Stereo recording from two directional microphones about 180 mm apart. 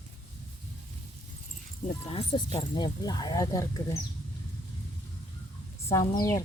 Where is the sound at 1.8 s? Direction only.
35° left (ahead or behind); by 4.0 s 15° left (ahead or behind).